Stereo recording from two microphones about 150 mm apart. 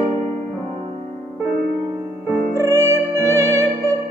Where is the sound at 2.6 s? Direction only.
20° right (ahead or behind).